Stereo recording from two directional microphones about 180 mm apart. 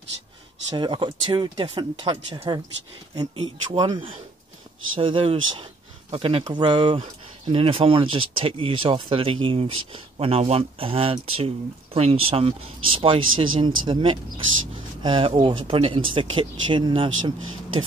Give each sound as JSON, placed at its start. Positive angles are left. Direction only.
{"t": 0.7, "sound": "speech", "side_deg": -25}